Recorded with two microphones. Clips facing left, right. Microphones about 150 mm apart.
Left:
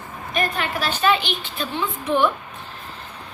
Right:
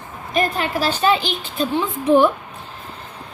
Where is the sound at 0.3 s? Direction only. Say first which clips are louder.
Right 4 dB; 30° right (ahead or behind).